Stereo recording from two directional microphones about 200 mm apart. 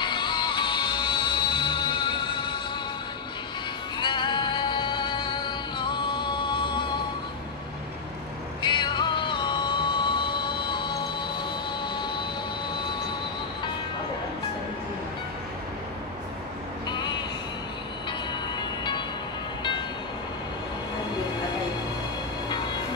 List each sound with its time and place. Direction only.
0.0 s music: 25° left (ahead or behind)
4.0 s music: 25° left (ahead or behind)
8.6 s music: 20° left (ahead or behind)
11.8 s train: 20° left (ahead or behind)